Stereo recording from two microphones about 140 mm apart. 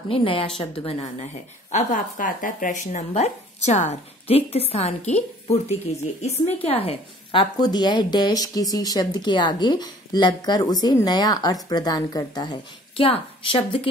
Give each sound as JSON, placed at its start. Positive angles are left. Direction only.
{"t": 0.1, "sound": "a woman's voice", "side_deg": 40}
{"t": 6.2, "sound": "a woman's voice", "side_deg": 50}
{"t": 7.6, "sound": "speech", "side_deg": 30}